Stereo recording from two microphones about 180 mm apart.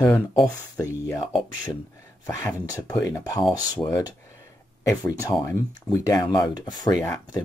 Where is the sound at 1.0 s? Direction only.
20° left (ahead or behind).